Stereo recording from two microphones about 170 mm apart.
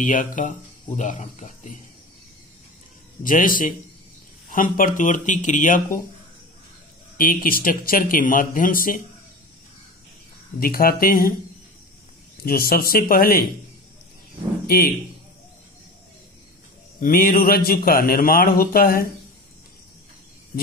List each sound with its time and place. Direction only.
0.0 s speech: 50° left (ahead or behind)
3.3 s speech: 55° left (ahead or behind)
7.2 s speech: 55° left (ahead or behind)
10.6 s speech: 60° left (ahead or behind)
12.4 s speech: 60° left (ahead or behind)
17.0 s speech: 55° left (ahead or behind)